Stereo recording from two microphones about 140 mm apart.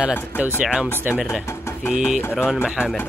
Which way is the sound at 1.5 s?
20° left (ahead or behind).